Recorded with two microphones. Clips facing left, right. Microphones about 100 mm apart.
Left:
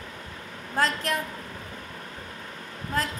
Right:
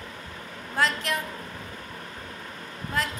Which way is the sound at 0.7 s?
40° left (ahead or behind).